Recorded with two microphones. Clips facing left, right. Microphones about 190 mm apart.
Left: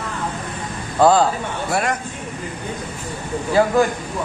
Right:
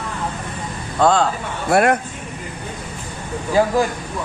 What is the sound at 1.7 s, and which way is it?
Speech, 60° right (ahead or behind).